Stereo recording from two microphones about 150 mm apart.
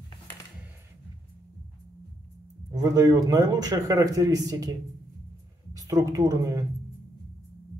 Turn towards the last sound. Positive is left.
turn(degrees=-25)  # may be behind; listen again after turning